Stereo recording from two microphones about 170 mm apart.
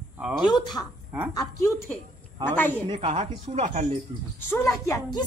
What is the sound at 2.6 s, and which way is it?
Speech, 10° left (ahead or behind).